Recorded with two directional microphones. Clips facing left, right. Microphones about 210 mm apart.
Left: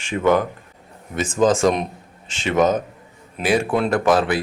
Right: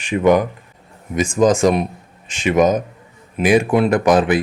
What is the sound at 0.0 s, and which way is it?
A man's voice, 15° right (ahead or behind).